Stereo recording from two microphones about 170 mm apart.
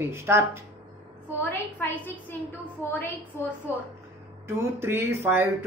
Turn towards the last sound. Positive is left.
turn(degrees=-15)  # may be behind; listen again after turning